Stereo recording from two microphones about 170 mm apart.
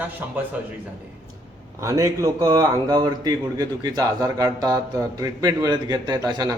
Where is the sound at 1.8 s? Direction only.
20° right (ahead or behind).